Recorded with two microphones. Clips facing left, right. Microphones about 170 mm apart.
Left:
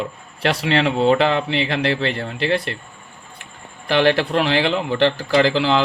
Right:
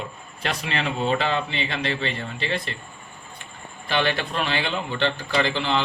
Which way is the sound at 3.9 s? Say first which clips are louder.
Left 8 dB; 75° left (ahead or behind).